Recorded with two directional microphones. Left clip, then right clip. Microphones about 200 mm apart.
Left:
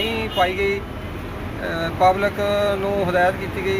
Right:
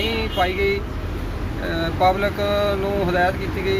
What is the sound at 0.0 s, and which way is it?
Vehicle, centre (ahead or behind).